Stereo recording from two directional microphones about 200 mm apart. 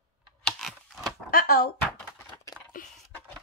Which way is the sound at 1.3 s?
45° left (ahead or behind).